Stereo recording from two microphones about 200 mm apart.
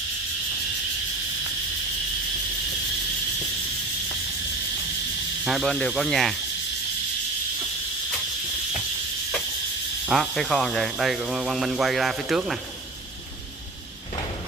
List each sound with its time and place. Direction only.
5.4 s speech: centre (ahead or behind)
10.0 s speech: centre (ahead or behind)